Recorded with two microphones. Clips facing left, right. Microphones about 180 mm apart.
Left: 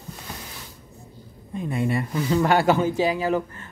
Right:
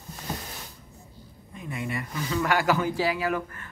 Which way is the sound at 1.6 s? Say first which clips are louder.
Left 8 dB; 30° left (ahead or behind).